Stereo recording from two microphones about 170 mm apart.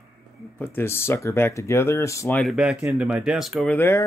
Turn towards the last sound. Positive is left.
turn(degrees=15)  # may be behind; listen again after turning